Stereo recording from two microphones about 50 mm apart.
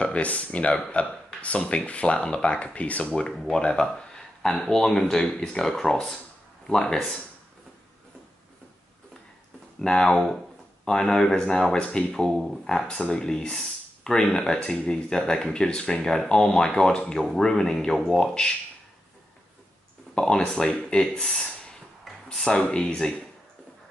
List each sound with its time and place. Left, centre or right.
0.0 s speech: left
9.8 s speech: centre
11.8 s speech: left
12.1 s speech: centre
20.2 s speech: centre
22.5 s speech: centre